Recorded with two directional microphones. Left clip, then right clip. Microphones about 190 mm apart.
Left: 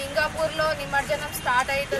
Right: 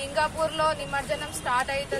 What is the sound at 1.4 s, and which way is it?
Music, centre (ahead or behind).